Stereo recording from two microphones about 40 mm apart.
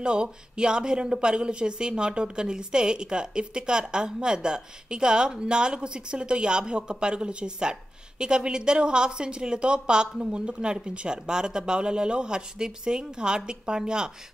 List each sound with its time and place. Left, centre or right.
0.0 s a woman's voice: right